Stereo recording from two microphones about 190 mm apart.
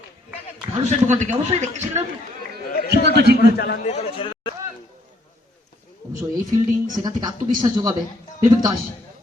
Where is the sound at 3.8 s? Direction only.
35° left (ahead or behind).